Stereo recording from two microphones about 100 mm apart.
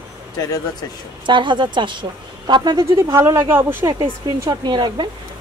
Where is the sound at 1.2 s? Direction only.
50° right (ahead or behind).